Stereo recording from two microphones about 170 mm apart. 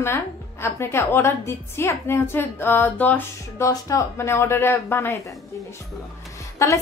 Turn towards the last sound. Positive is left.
turn(degrees=15)  # may be behind; listen again after turning